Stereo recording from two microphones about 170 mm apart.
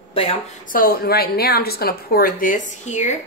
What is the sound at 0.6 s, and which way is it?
Speech, 55° left (ahead or behind).